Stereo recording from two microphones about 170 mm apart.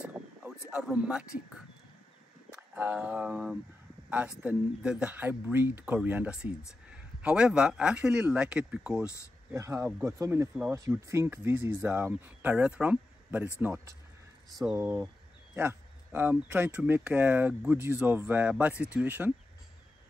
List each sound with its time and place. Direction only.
0.0 s a sound: 5° right (ahead or behind)
2.5 s speech: 10° right (ahead or behind)
9.0 s speech: 15° left (ahead or behind)
9.5 s speech: 15° right (ahead or behind)